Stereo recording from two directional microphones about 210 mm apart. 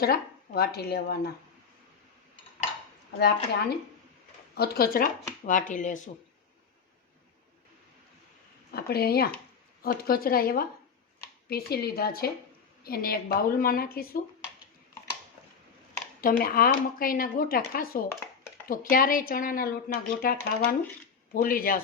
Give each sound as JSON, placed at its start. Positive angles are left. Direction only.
{"t": 0.0, "sound": "speech", "side_deg": 50}
{"t": 3.2, "sound": "speech", "side_deg": 50}
{"t": 8.7, "sound": "speech", "side_deg": 50}
{"t": 16.4, "sound": "speech", "side_deg": 45}